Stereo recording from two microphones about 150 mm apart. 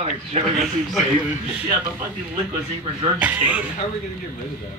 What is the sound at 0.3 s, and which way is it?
Speech, 45° right (ahead or behind).